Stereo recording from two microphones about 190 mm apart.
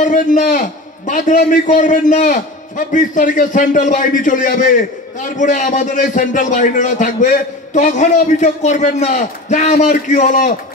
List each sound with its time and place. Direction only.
0.0 s a man's voice: 40° left (ahead or behind)